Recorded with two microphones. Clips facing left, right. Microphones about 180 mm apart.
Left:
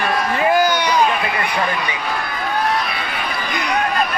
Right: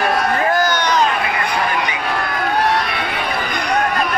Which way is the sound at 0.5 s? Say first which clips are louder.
Left 1 dB; 10° left (ahead or behind).